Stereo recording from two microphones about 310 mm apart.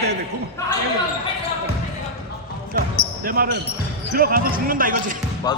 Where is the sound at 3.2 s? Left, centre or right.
Right.